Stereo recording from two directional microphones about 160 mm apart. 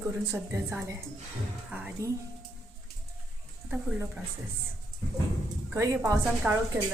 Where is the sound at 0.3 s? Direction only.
15° right (ahead or behind).